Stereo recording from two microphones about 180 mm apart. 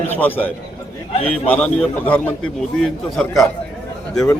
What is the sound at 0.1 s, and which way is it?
A man's voice, 10° left (ahead or behind).